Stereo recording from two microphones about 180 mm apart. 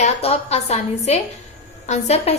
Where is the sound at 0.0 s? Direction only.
35° left (ahead or behind).